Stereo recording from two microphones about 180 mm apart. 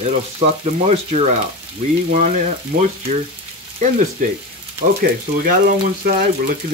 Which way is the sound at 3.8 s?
45° right (ahead or behind).